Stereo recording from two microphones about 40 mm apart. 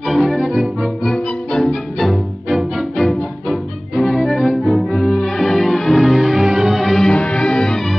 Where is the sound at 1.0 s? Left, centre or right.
Centre.